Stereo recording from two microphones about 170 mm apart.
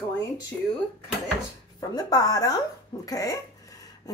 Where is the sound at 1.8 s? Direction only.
20° left (ahead or behind).